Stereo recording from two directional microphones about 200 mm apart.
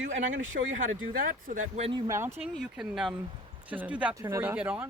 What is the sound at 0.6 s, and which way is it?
Speech, 45° right (ahead or behind).